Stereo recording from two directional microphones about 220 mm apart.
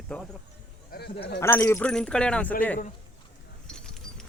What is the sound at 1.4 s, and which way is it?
Speech, 10° left (ahead or behind).